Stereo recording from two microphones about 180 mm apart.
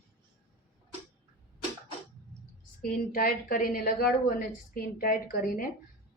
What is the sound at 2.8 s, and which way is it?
A woman's voice, 50° left (ahead or behind).